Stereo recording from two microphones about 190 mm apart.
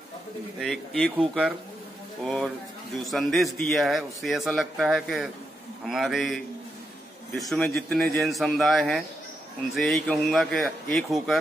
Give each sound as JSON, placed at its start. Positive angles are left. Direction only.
{"t": 0.6, "sound": "a man's voice", "side_deg": 5}